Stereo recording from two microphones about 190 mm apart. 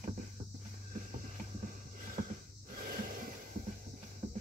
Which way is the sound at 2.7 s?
50° right (ahead or behind).